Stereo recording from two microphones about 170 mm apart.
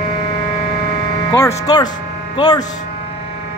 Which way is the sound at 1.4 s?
20° left (ahead or behind).